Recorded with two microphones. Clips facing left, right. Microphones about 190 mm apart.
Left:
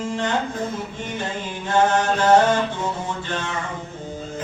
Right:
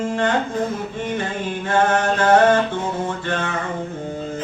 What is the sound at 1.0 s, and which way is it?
Mantra, 55° right (ahead or behind).